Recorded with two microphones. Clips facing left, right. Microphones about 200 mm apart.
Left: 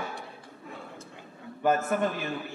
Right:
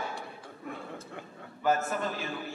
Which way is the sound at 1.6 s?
50° left (ahead or behind).